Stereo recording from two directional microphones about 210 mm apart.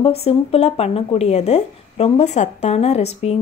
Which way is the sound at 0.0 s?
30° left (ahead or behind).